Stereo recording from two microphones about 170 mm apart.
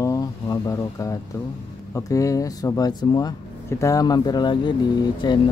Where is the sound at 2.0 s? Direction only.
20° left (ahead or behind).